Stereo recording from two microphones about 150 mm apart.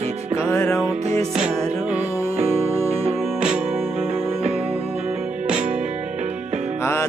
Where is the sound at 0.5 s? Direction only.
20° left (ahead or behind).